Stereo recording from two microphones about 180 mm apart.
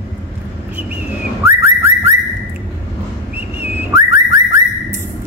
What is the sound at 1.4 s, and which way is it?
Whistling, 15° right (ahead or behind).